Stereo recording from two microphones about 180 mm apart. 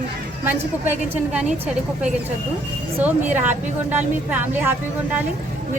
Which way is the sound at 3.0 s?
10° right (ahead or behind).